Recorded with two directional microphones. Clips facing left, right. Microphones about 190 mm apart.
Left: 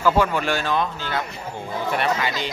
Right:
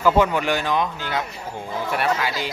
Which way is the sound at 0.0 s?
15° right (ahead or behind).